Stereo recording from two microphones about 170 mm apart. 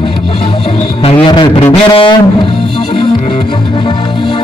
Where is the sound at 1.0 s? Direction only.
30° left (ahead or behind).